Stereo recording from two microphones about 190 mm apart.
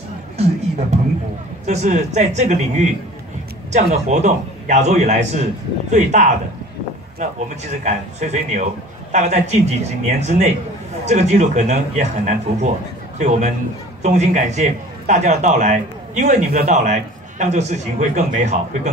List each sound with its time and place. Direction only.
0.4 s a man's voice: 35° right (ahead or behind)
14.0 s a man's voice: 35° right (ahead or behind)